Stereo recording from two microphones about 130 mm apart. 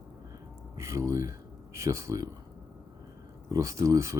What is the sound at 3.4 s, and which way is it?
Speech, 25° right (ahead or behind).